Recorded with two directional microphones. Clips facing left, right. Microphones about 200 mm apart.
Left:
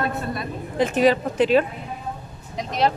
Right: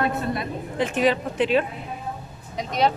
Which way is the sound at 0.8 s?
40° left (ahead or behind).